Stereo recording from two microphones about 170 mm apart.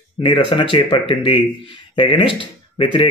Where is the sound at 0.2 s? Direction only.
30° left (ahead or behind).